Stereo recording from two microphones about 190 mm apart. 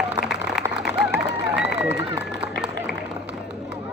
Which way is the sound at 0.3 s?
5° right (ahead or behind).